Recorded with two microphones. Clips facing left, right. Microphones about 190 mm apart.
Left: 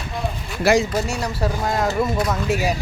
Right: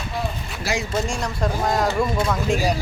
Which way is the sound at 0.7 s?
60° left (ahead or behind).